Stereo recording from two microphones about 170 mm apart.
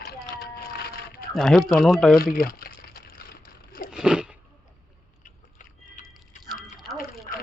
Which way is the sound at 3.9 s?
5° right (ahead or behind).